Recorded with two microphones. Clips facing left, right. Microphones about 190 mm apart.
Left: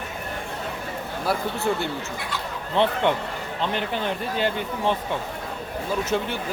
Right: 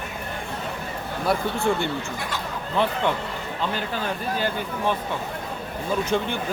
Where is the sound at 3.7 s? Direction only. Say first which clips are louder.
Left 1 dB; 20° left (ahead or behind).